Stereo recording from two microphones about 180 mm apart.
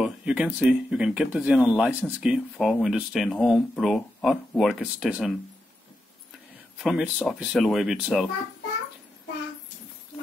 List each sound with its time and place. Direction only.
0.0 s speech: 5° right (ahead or behind)
6.8 s speech: 5° right (ahead or behind)